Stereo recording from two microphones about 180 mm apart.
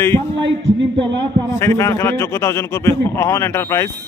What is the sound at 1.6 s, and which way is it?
A man's voice, 15° left (ahead or behind).